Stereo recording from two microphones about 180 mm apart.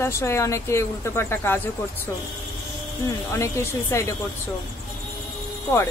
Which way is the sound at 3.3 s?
15° left (ahead or behind).